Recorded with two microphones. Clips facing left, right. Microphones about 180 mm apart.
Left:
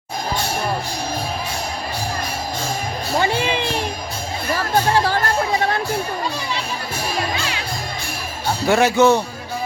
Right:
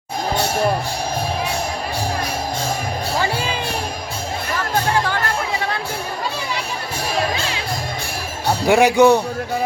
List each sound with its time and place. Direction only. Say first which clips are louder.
4.5 s music: left 2 dB; 35° left (ahead or behind)
8.6 s speech: right 2 dB; 15° right (ahead or behind)